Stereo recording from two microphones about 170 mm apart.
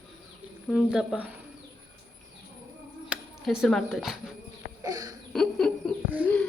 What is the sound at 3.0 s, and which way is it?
Speech, 5° right (ahead or behind).